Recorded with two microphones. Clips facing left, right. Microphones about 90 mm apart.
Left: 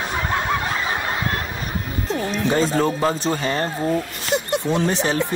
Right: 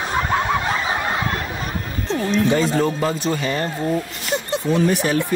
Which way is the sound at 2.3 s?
35° left (ahead or behind).